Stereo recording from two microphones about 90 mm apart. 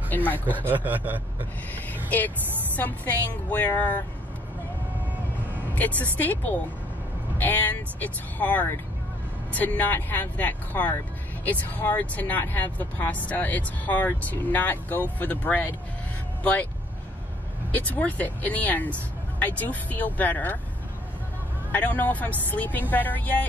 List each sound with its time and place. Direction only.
0.5 s speech: 20° right (ahead or behind)
1.9 s speech: 20° left (ahead or behind)
5.8 s speech: 20° left (ahead or behind)
17.7 s speech: 20° left (ahead or behind)
21.7 s speech: 20° left (ahead or behind)